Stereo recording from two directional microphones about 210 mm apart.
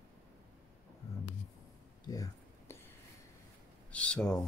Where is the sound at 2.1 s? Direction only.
15° left (ahead or behind).